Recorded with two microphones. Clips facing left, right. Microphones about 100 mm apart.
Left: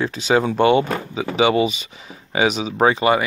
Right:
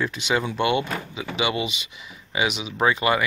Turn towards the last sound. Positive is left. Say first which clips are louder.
# left 5 dB
turn(degrees=30)  # may be behind; listen again after turning